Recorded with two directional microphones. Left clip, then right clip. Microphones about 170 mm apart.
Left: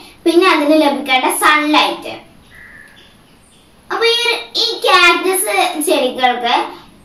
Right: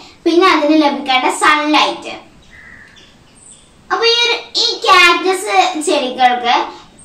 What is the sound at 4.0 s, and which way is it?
Child singing, centre (ahead or behind).